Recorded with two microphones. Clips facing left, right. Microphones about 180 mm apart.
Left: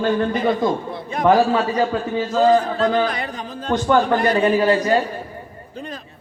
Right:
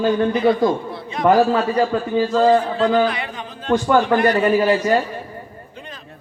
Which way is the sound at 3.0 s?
40° left (ahead or behind).